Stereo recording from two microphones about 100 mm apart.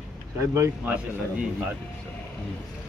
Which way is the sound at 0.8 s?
10° right (ahead or behind).